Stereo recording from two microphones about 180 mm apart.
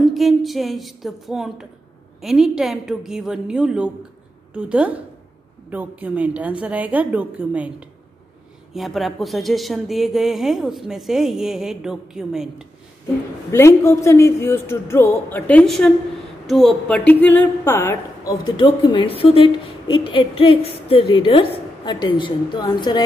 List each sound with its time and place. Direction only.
0.0 s a woman's voice: centre (ahead or behind)
8.7 s a woman's voice: centre (ahead or behind)
13.5 s a woman's voice: 15° left (ahead or behind)